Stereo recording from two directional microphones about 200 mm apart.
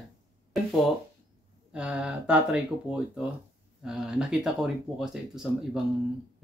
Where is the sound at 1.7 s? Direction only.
5° right (ahead or behind).